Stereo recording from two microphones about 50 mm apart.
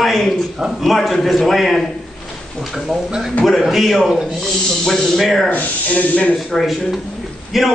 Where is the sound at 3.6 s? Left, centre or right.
Centre.